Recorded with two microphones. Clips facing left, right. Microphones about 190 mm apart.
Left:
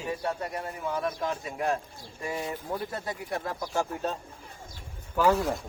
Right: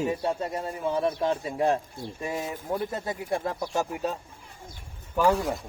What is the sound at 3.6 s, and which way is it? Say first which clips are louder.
Speech: right 2 dB; 10° right (ahead or behind).